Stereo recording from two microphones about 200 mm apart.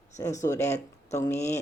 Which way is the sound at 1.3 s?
35° left (ahead or behind).